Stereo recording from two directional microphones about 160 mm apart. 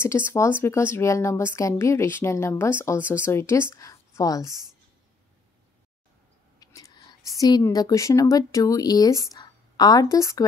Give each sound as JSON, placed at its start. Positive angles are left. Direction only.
{"t": 0.0, "sound": "speech", "side_deg": 15}
{"t": 6.6, "sound": "a woman's voice", "side_deg": 20}